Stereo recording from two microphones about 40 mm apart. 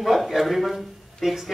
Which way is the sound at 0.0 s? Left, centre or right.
Centre.